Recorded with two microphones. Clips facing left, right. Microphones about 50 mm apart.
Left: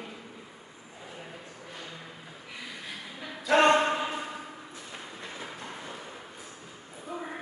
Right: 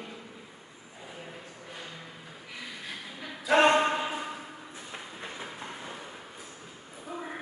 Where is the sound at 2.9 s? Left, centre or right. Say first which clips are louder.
Even; centre.